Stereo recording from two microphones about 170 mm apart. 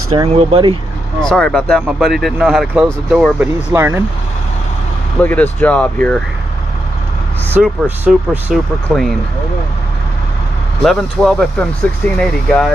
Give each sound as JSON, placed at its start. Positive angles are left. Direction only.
{"t": 0.3, "sound": "speech", "side_deg": -35}
{"t": 1.2, "sound": "speech", "side_deg": 5}
{"t": 3.7, "sound": "speech", "side_deg": -15}
{"t": 5.2, "sound": "speech", "side_deg": 10}
{"t": 7.6, "sound": "speech", "side_deg": -5}
{"t": 10.8, "sound": "speech", "side_deg": 0}